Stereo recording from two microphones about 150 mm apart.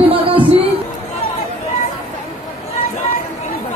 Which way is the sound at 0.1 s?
40° right (ahead or behind).